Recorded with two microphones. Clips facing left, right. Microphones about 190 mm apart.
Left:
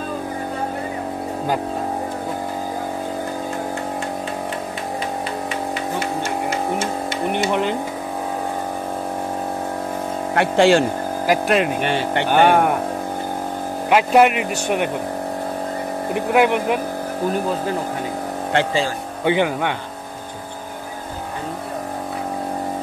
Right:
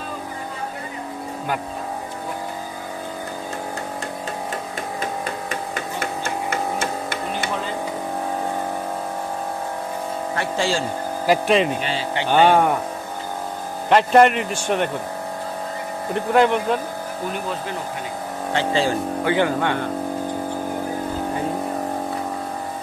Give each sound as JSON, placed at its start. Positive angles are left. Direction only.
{"t": 10.3, "sound": "speech", "side_deg": 65}
{"t": 11.2, "sound": "speech", "side_deg": 5}
{"t": 11.8, "sound": "speech", "side_deg": 60}
{"t": 12.3, "sound": "speech", "side_deg": 10}
{"t": 13.8, "sound": "speech", "side_deg": 5}
{"t": 16.2, "sound": "speech", "side_deg": 10}
{"t": 19.2, "sound": "speech", "side_deg": 15}